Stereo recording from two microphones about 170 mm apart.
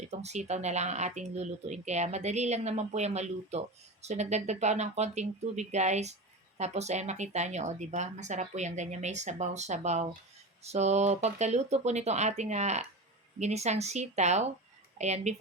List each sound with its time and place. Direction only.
0.0 s speech: 40° right (ahead or behind)